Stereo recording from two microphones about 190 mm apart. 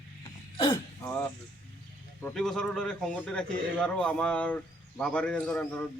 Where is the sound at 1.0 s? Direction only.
10° left (ahead or behind).